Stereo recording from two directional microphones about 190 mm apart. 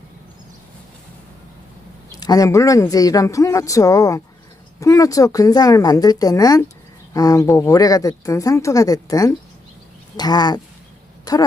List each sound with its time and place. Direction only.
2.1 s a woman's voice: 20° left (ahead or behind)